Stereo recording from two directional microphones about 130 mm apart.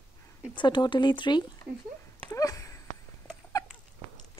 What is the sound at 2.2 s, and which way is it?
Sniff, 25° left (ahead or behind).